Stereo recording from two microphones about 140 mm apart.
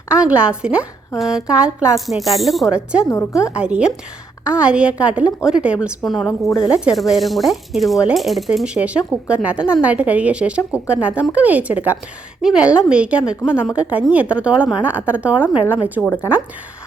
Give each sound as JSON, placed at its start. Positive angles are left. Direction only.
{"t": 0.1, "sound": "speech", "side_deg": -10}
{"t": 3.1, "sound": "a woman's voice", "side_deg": 20}
{"t": 3.5, "sound": "speech", "side_deg": -5}